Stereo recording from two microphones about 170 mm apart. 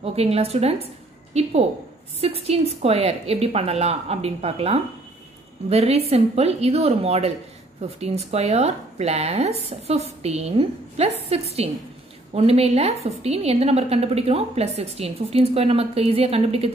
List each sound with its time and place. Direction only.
0.0 s a woman's voice: 35° right (ahead or behind)